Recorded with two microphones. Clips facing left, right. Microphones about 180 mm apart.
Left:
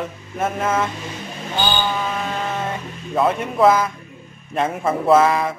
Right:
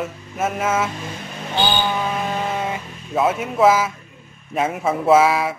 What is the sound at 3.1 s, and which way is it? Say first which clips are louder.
Speech: even; 5° right (ahead or behind).